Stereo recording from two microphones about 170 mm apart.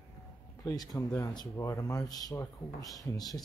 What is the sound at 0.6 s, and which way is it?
Speech, 20° left (ahead or behind).